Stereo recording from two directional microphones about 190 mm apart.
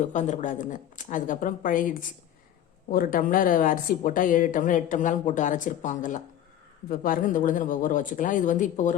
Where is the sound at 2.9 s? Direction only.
50° left (ahead or behind).